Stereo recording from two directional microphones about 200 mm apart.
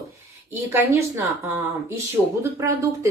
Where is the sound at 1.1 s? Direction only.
10° right (ahead or behind).